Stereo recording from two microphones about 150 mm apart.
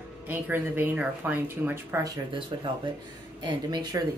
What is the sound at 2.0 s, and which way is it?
Speech, 30° right (ahead or behind).